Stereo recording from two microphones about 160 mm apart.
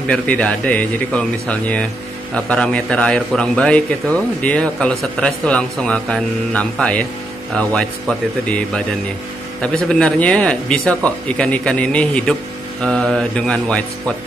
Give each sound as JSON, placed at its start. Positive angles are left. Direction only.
{"t": 0.1, "sound": "a man's voice", "side_deg": 5}